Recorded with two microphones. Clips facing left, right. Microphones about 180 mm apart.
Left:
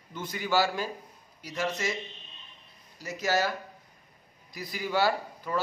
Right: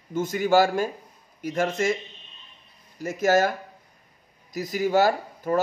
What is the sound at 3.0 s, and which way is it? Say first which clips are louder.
A man's voice: right 7 dB; 50° right (ahead or behind).